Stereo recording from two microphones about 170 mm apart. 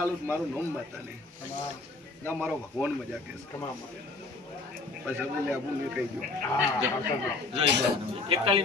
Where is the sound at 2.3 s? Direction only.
10° right (ahead or behind).